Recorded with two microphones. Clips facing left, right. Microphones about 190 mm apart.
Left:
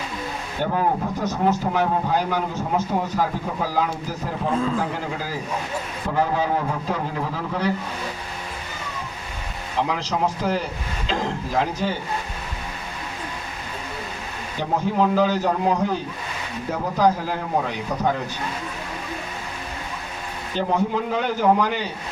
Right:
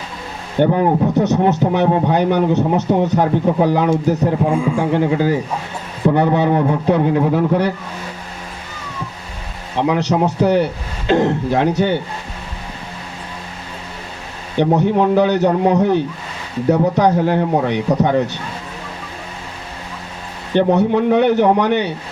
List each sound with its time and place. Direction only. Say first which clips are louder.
0.6 s speech: right 9 dB; 70° right (ahead or behind)
4.4 s a man's voice: right 5 dB; 10° right (ahead or behind)
4.8 s speech: right 11 dB; 70° right (ahead or behind)
9.9 s speech: right 7 dB; 70° right (ahead or behind)
14.6 s speech: right 7 dB; 70° right (ahead or behind)
20.5 s speech: right 9 dB; 70° right (ahead or behind)